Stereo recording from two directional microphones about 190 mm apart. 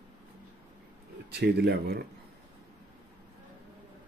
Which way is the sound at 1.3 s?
60° right (ahead or behind).